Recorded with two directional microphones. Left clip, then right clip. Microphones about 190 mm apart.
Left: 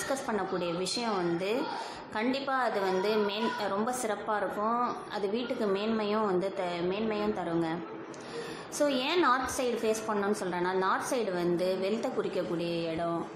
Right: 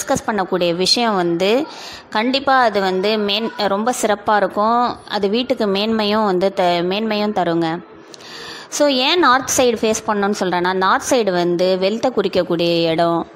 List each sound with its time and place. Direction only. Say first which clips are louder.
0.1 s a woman's voice: right 15 dB; 40° right (ahead or behind)
8.7 s a woman's voice: right 13 dB; 45° right (ahead or behind)